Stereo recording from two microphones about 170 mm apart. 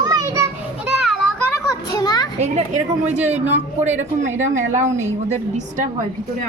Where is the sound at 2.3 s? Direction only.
40° right (ahead or behind).